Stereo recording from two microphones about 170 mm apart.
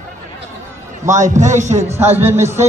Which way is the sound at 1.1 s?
45° right (ahead or behind).